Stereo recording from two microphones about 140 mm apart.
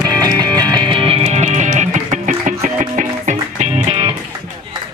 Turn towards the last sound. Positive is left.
turn(degrees=-40)  # may be behind; listen again after turning